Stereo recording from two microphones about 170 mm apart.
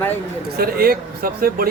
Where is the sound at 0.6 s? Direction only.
60° right (ahead or behind).